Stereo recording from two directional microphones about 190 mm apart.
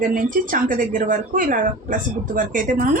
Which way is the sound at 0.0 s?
45° right (ahead or behind).